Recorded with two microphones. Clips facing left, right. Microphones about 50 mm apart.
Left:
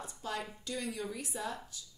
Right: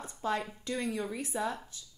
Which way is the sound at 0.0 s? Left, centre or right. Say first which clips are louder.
Right 6 dB; right.